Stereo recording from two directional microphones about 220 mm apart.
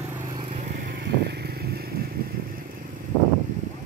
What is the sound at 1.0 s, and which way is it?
Vehicle, 45° right (ahead or behind).